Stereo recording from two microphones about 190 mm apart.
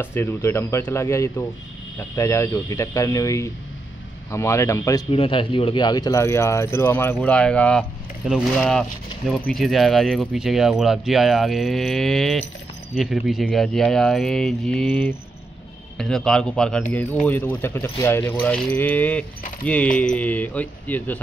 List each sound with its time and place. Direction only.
0.0 s speech: 10° left (ahead or behind)
5.1 s speech: 30° left (ahead or behind); by 21.2 s 10° left (ahead or behind)